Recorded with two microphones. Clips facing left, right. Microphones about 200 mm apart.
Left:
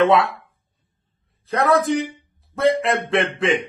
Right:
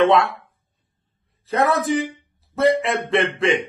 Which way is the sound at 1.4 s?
Centre (ahead or behind).